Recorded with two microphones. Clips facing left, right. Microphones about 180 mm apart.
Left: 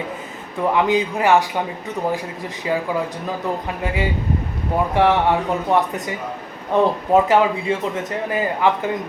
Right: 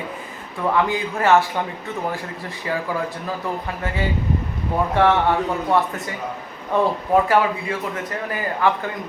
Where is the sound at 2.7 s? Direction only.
15° left (ahead or behind).